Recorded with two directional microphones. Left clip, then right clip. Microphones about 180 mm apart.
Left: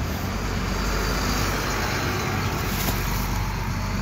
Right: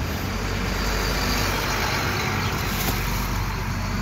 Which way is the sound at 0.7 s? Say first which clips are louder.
Right 1 dB; 45° left (ahead or behind).